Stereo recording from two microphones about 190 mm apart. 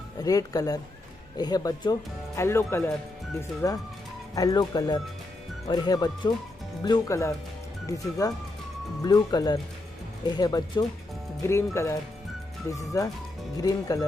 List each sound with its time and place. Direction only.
0.2 s speech: 20° left (ahead or behind)
13.6 s speech: 20° left (ahead or behind)